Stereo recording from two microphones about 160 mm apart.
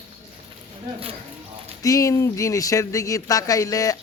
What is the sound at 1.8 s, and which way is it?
Speech, 20° left (ahead or behind).